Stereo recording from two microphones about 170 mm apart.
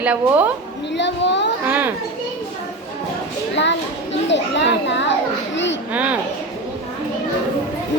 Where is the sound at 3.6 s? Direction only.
90° left.